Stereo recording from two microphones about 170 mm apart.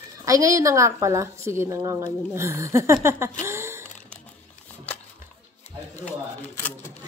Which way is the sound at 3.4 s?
15° right (ahead or behind).